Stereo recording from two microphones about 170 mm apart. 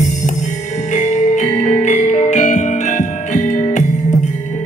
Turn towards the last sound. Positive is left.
turn(degrees=45)  # may be behind; listen again after turning